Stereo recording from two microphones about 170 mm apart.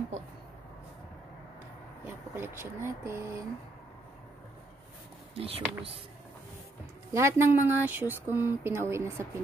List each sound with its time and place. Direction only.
2.0 s speech: 15° right (ahead or behind)
5.3 s speech: 35° right (ahead or behind)
7.2 s speech: 15° right (ahead or behind)